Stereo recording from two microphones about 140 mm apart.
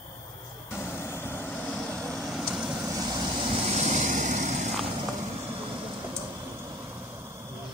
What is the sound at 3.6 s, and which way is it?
Vehicle, 55° right (ahead or behind).